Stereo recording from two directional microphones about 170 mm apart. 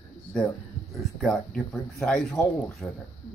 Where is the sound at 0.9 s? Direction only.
Centre (ahead or behind).